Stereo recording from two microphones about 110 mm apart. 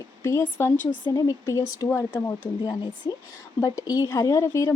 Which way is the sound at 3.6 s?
35° left (ahead or behind).